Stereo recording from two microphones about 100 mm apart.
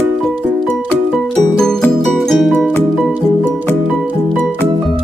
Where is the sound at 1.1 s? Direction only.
5° left (ahead or behind).